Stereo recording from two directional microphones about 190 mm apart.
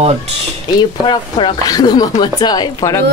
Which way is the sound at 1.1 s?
25° left (ahead or behind).